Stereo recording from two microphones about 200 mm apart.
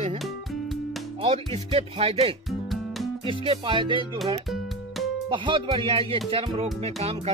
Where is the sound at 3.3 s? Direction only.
25° right (ahead or behind).